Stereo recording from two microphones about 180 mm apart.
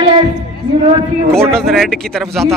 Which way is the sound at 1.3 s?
5° left (ahead or behind).